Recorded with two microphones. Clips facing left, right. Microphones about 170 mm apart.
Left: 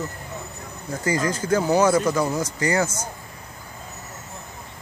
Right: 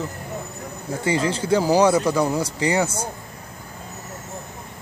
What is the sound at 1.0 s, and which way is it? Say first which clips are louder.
Speech: right 1 dB; 30° right (ahead or behind).